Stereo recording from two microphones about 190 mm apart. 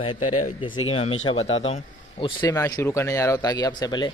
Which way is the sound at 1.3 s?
30° left (ahead or behind).